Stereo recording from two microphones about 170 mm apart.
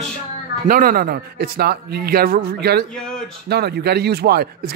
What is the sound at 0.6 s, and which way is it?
A man's voice, 55° right (ahead or behind).